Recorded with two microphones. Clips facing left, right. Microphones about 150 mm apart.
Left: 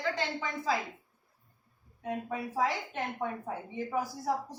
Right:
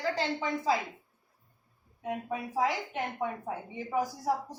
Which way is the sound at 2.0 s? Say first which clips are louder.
Right 1 dB; 15° right (ahead or behind).